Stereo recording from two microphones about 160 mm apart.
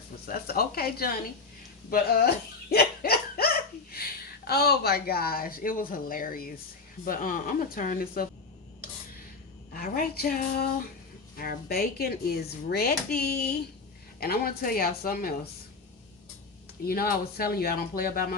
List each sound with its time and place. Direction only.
0.3 s speech: 70° left (ahead or behind)
1.9 s a sound: 75° left (ahead or behind)
3.9 s a woman's voice: 80° left; by 8.3 s 65° left (ahead or behind)
9.7 s speech: 65° left (ahead or behind)
16.8 s speech: 70° left (ahead or behind)